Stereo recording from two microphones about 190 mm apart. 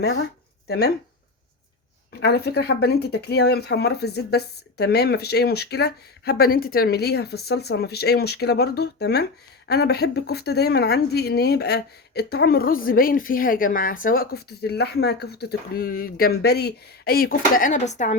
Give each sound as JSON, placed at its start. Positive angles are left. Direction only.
{"t": 0.7, "sound": "speech", "side_deg": 60}
{"t": 2.2, "sound": "speech", "side_deg": 60}